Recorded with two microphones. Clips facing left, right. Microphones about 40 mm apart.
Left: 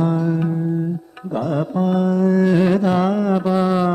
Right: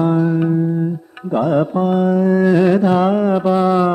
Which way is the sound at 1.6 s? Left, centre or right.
Centre.